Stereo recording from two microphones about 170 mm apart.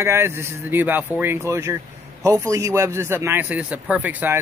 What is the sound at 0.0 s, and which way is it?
Speech, 15° right (ahead or behind).